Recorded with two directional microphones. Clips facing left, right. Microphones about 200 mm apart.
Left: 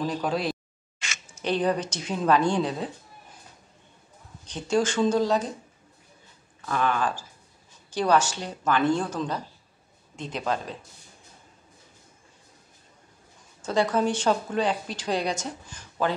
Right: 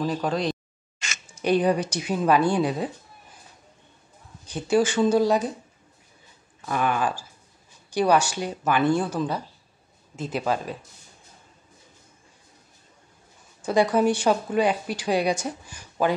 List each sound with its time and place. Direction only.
0.0 s speech: centre (ahead or behind)
0.9 s a sound: 45° right (ahead or behind)
1.3 s speech: 10° right (ahead or behind)
4.5 s speech: 10° right (ahead or behind)
6.6 s speech: 15° right (ahead or behind)
13.6 s speech: 10° right (ahead or behind)